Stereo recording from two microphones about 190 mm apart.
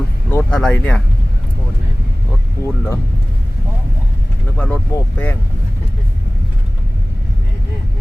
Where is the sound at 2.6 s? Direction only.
15° left (ahead or behind).